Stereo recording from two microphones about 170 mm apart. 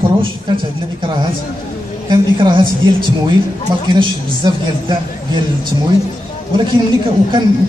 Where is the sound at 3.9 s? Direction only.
30° right (ahead or behind).